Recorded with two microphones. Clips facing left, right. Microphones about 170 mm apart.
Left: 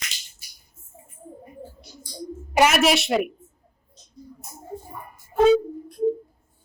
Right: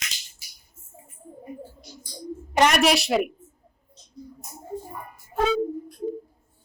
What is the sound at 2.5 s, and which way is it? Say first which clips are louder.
Speech: left 1 dB; 5° left (ahead or behind).